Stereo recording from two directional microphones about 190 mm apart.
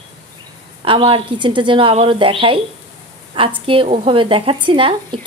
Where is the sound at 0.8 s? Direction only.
30° right (ahead or behind).